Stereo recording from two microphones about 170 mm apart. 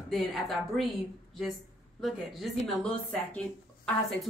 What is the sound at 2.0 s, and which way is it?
A woman's voice, centre (ahead or behind).